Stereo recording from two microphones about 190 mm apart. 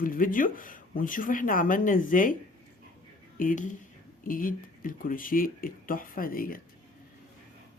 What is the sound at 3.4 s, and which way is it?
Speech, 45° left (ahead or behind).